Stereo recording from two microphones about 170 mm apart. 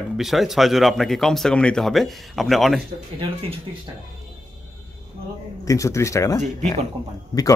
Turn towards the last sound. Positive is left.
turn(degrees=20)  # may be behind; listen again after turning